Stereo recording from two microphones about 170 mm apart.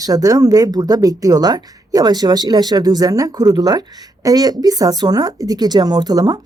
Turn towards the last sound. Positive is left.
turn(degrees=-25)  # may be behind; listen again after turning